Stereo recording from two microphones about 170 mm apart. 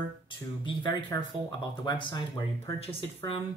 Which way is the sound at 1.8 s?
25° left (ahead or behind).